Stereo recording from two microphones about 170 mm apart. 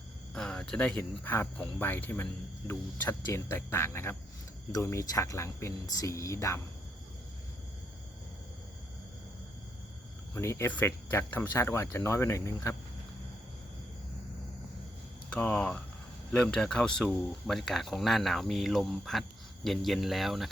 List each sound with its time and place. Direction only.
0.3 s speech: 5° left (ahead or behind)
10.3 s speech: 15° left (ahead or behind)
15.3 s speech: 5° left (ahead or behind)